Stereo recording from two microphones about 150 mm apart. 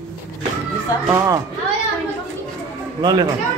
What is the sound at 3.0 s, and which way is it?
Speech, 30° right (ahead or behind).